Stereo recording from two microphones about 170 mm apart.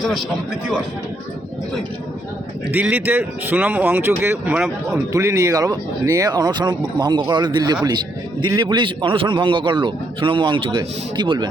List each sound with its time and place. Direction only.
0.0 s a man's voice: centre (ahead or behind)
2.7 s a man's voice: 10° right (ahead or behind); by 11.4 s 25° right (ahead or behind)